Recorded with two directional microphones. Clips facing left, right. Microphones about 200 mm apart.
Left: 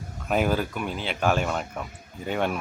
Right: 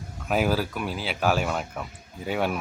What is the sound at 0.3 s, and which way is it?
Speech, 5° right (ahead or behind).